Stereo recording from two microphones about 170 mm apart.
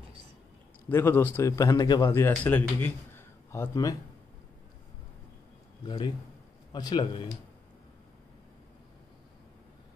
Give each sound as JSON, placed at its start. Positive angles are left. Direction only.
{"t": 0.8, "sound": "a man's voice", "side_deg": 15}
{"t": 5.9, "sound": "speech", "side_deg": 25}